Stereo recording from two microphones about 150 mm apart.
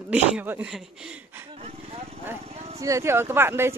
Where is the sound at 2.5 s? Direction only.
45° right (ahead or behind).